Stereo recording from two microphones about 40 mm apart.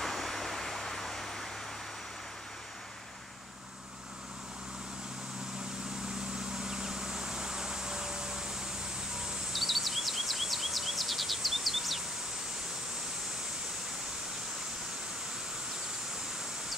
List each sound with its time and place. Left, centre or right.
0.0 s vehicle: centre
6.5 s vehicle: centre
9.5 s bird vocalization: centre